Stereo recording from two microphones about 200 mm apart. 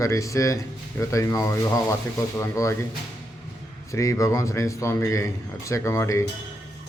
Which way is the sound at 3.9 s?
15° left (ahead or behind).